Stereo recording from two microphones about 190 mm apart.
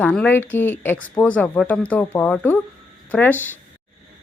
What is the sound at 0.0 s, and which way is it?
Speech, 10° left (ahead or behind).